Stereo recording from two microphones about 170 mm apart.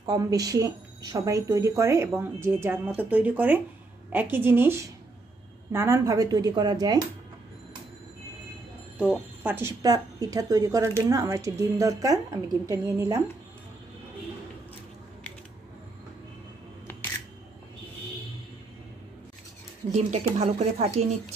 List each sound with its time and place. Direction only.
0.0 s a woman's voice: 20° right (ahead or behind)
8.9 s a woman's voice: 5° right (ahead or behind)
19.9 s speech: 45° right (ahead or behind)